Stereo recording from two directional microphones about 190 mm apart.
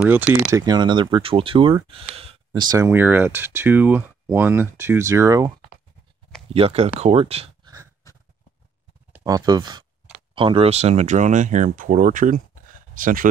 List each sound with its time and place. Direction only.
0.5 s speech: 20° right (ahead or behind)
2.9 s speech: 10° right (ahead or behind)
6.5 s speech: 30° right (ahead or behind)
8.0 s a sound: 20° left (ahead or behind)
9.1 s speech: 20° right (ahead or behind); by 13.3 s 45° right (ahead or behind)